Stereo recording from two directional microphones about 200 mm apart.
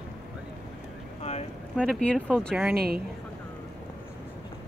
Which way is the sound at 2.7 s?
50° right (ahead or behind).